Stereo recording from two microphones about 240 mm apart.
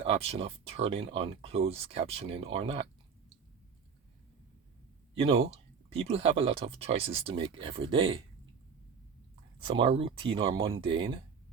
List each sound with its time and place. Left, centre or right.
0.0 s speech: right
5.1 s speech: right
9.6 s speech: right